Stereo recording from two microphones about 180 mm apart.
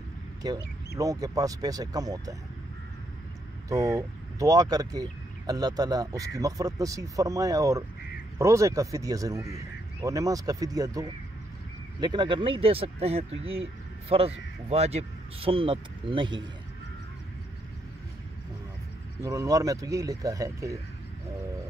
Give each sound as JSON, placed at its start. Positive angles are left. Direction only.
{"t": 0.4, "sound": "speech", "side_deg": -20}
{"t": 3.6, "sound": "speech", "side_deg": -20}
{"t": 19.2, "sound": "speech", "side_deg": -20}